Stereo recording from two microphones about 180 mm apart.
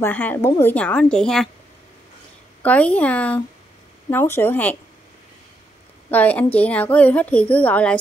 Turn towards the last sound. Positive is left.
turn(degrees=10)  # may be behind; listen again after turning